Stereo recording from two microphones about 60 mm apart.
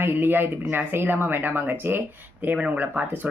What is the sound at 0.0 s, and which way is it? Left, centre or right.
Speech, right.